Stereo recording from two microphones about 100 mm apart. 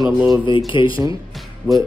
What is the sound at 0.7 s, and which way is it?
Speech, 55° left (ahead or behind).